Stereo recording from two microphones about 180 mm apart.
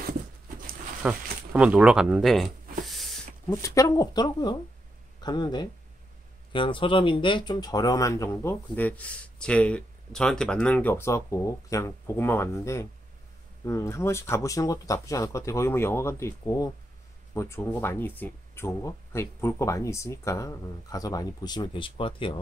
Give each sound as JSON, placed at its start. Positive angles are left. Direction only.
{"t": 1.0, "sound": "speech", "side_deg": -5}
{"t": 2.9, "sound": "a sound", "side_deg": 0}
{"t": 3.4, "sound": "speech", "side_deg": 20}